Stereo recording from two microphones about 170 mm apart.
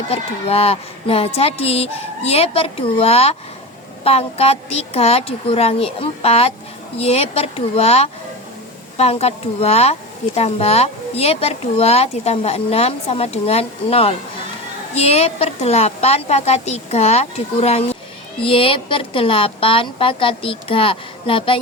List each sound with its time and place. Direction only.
0.1 s a woman's voice: 35° left (ahead or behind)